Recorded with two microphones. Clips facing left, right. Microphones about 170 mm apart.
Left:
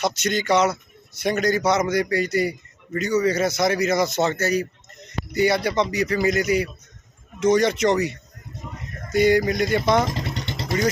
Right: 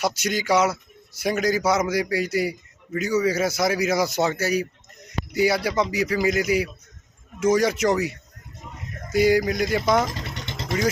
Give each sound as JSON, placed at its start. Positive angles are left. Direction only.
{"t": 0.0, "sound": "a man's voice", "side_deg": -10}